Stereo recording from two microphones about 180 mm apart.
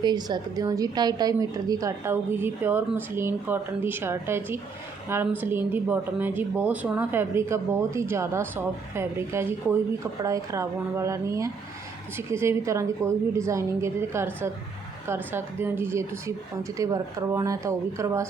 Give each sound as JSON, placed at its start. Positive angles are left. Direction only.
{"t": 0.0, "sound": "a woman's voice", "side_deg": -25}